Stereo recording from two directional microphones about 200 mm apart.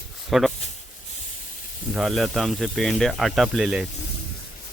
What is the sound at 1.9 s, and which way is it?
Speech, centre (ahead or behind).